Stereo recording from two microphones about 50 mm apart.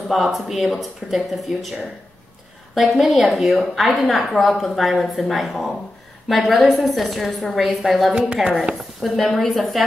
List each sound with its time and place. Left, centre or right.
0.1 s a woman's voice: centre
2.7 s a woman's voice: centre
8.1 s speech: centre
8.7 s a woman's voice: centre